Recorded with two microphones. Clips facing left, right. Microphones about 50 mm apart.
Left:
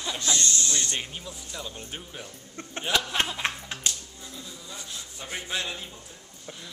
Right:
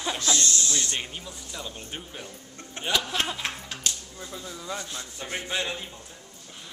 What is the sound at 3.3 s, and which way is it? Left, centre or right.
Music, left.